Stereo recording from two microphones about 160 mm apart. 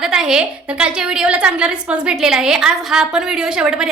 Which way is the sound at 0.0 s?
5° right (ahead or behind).